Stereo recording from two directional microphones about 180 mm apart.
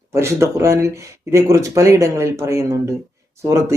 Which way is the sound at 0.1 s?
15° right (ahead or behind).